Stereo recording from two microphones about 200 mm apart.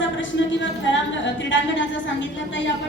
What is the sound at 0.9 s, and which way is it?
A woman's voice, 65° left (ahead or behind).